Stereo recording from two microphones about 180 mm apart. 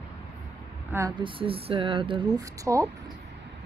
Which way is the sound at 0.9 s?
20° right (ahead or behind).